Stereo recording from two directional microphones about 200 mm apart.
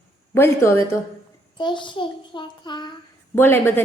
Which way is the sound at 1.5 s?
25° left (ahead or behind).